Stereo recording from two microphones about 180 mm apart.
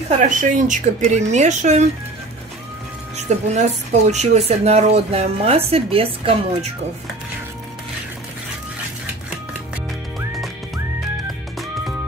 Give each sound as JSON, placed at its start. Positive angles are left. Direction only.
{"t": 0.2, "sound": "a woman's voice", "side_deg": -45}
{"t": 3.2, "sound": "a woman's voice", "side_deg": -40}